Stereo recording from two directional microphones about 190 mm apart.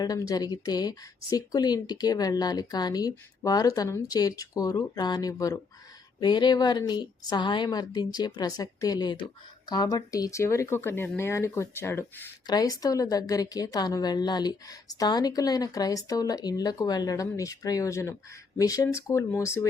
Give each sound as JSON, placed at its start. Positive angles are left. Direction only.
{"t": 0.0, "sound": "speech", "side_deg": 20}